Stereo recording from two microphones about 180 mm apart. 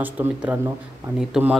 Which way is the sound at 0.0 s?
10° right (ahead or behind).